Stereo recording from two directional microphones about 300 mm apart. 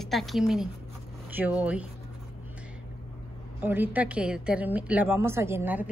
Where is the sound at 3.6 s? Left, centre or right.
Centre.